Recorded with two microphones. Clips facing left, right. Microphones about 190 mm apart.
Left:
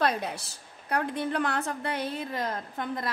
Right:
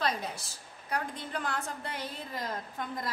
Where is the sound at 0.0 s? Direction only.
60° left (ahead or behind).